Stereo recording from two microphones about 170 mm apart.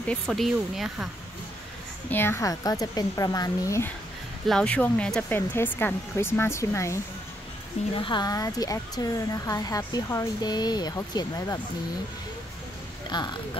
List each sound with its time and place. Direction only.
0.1 s speech: centre (ahead or behind)
2.0 s speech: 15° left (ahead or behind)
4.5 s speech: 5° left (ahead or behind)
7.9 s speech: 30° left (ahead or behind)
13.1 s speech: 25° left (ahead or behind)